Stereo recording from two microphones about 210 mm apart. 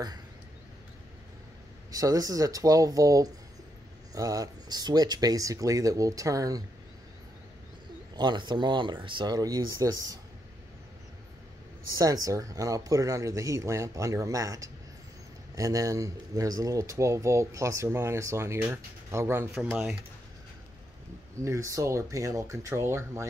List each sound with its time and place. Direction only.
1.9 s speech: 15° right (ahead or behind)
8.2 s speech: 20° right (ahead or behind)
11.9 s speech: 15° right (ahead or behind)
19.6 s speech: centre (ahead or behind)
21.5 s speech: 15° right (ahead or behind)